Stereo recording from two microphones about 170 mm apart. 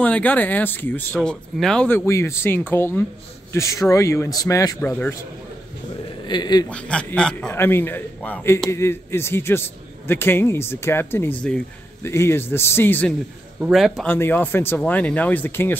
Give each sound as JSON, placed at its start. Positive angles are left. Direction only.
{"t": 0.0, "sound": "a man's voice", "side_deg": 10}
{"t": 6.2, "sound": "speech", "side_deg": 25}
{"t": 6.7, "sound": "a man's voice", "side_deg": 5}
{"t": 13.6, "sound": "a man's voice", "side_deg": 0}
{"t": 14.0, "sound": "a man's voice", "side_deg": 10}